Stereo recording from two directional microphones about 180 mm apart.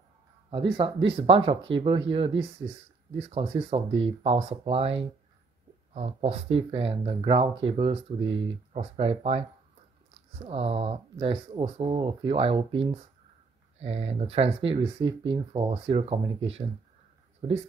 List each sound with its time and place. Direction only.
0.5 s speech: 30° right (ahead or behind)